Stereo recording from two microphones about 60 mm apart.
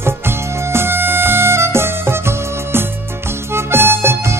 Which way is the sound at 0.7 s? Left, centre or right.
Right.